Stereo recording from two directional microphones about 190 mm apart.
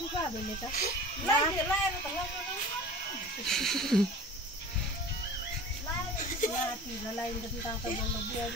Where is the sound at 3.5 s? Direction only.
Centre (ahead or behind).